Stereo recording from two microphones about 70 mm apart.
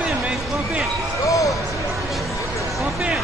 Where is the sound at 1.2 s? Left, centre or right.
Left.